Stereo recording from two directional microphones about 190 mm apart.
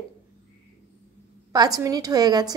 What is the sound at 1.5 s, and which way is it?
A woman's voice, 20° right (ahead or behind).